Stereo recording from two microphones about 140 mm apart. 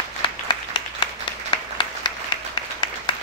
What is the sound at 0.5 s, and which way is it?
Applause, 35° left (ahead or behind).